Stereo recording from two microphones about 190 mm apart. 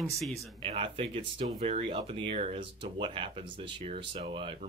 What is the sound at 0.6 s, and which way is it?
Speech, 30° right (ahead or behind).